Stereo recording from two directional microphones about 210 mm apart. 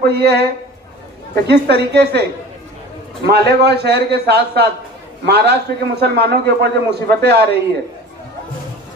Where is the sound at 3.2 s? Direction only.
50° right (ahead or behind).